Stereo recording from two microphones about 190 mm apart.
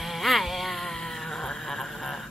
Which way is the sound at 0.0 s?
Centre (ahead or behind).